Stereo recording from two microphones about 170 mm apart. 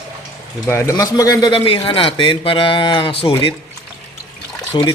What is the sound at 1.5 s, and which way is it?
Speech, 30° left (ahead or behind).